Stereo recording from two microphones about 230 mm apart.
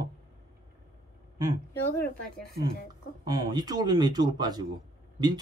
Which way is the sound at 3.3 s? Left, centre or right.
Centre.